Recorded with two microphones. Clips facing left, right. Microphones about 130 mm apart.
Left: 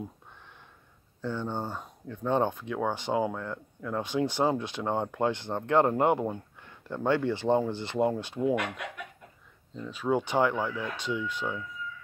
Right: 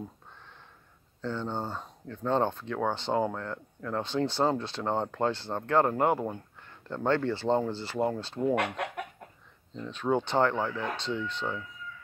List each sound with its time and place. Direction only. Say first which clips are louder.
1.2 s speech: even; 15° left (ahead or behind)
6.2 s a sound: left 2 dB; 10° left (ahead or behind)
7.1 s speech: left 1 dB; 15° left (ahead or behind)
9.8 s speech: even; 5° left (ahead or behind)